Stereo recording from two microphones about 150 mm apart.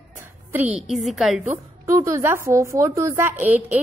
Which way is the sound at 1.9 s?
20° right (ahead or behind).